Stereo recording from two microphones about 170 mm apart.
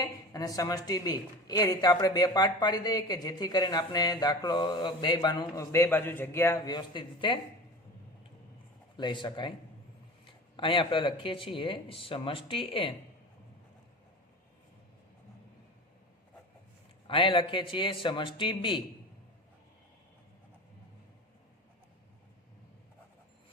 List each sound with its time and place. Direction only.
0.0 s speech: 20° left (ahead or behind)
9.0 s speech: 25° left (ahead or behind)
17.1 s speech: 30° left (ahead or behind)